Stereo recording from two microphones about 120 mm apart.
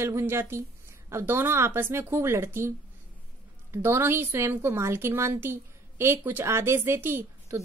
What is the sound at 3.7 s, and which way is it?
A woman's voice, 20° right (ahead or behind).